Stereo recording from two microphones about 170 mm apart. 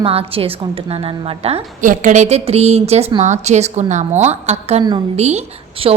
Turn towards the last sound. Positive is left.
turn(degrees=-35)  # may be behind; listen again after turning